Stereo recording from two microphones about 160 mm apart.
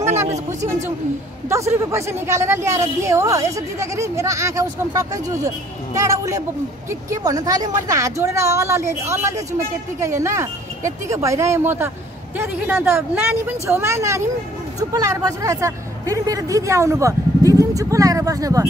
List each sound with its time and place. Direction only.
1.5 s a woman's voice: 20° right (ahead or behind)